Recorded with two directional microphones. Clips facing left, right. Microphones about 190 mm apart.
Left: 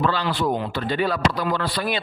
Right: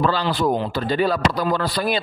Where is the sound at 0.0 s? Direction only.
40° right (ahead or behind).